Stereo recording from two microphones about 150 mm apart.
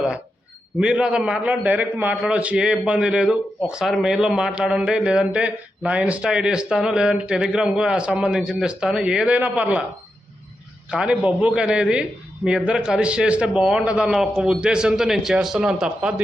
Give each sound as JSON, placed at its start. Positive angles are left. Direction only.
{"t": 0.8, "sound": "a man's voice", "side_deg": -5}
{"t": 10.9, "sound": "a man's voice", "side_deg": -5}